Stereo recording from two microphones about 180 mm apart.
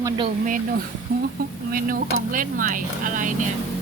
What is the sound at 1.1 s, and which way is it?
Speech, 60° right (ahead or behind).